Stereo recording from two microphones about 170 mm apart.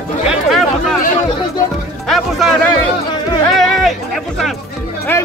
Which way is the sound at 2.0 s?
Centre (ahead or behind).